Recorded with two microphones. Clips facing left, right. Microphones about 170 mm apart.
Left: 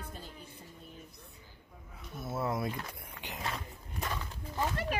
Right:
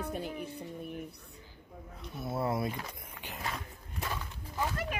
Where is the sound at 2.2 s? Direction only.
Centre (ahead or behind).